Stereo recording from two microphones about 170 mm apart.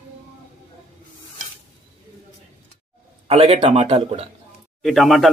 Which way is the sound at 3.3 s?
35° right (ahead or behind).